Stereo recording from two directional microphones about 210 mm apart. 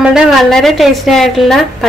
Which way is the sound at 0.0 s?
5° right (ahead or behind).